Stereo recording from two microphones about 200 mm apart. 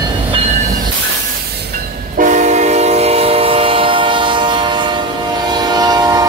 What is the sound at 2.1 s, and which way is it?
Train, 40° right (ahead or behind).